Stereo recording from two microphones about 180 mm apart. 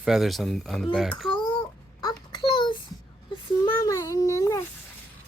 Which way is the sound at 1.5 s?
25° left (ahead or behind).